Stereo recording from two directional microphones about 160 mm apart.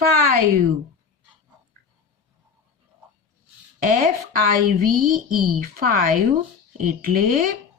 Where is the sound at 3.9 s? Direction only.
65° right (ahead or behind).